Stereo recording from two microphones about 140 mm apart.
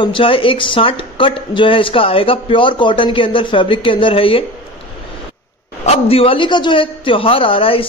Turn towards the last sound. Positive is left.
turn(degrees=40)  # may be behind; listen again after turning